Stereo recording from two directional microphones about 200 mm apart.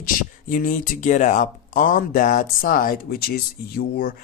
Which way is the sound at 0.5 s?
40° left (ahead or behind).